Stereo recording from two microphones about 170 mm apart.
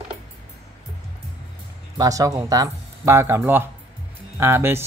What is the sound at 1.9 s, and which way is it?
Speech, 20° right (ahead or behind).